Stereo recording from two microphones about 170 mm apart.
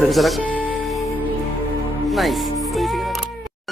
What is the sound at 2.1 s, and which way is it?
Music, centre (ahead or behind).